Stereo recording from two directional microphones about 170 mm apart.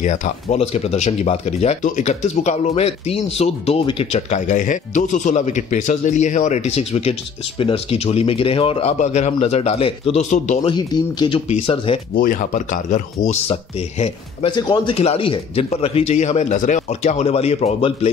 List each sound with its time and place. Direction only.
0.0 s speech: 45° left (ahead or behind)
10.3 s speech: 45° left (ahead or behind)
10.7 s speech: 25° left (ahead or behind)
12.2 s speech: 55° left (ahead or behind); by 14.5 s 40° left (ahead or behind)
14.5 s speech: 25° left (ahead or behind)